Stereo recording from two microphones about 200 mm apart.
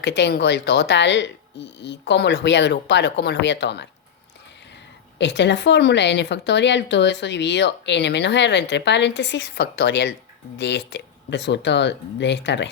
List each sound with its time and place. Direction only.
0.0 s a woman's voice: 60° left (ahead or behind)